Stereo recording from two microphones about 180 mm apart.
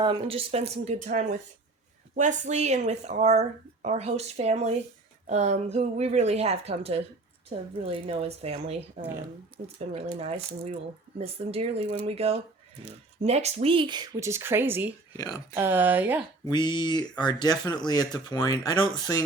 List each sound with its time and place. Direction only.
0.0 s a woman's voice: 30° right (ahead or behind)
0.9 s a woman's voice: 45° right (ahead or behind); by 14.9 s 10° right (ahead or behind)
15.1 s speech: 20° left (ahead or behind)
15.5 s speech: 10° right (ahead or behind)
16.5 s speech: 25° left (ahead or behind)